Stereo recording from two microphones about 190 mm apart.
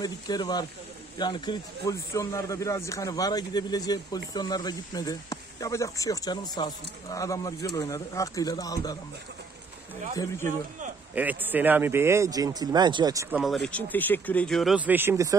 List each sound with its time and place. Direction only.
0.0 s speech: 20° left (ahead or behind)
11.1 s speech: 10° right (ahead or behind)
13.4 s speech: centre (ahead or behind); by 15.3 s 15° right (ahead or behind)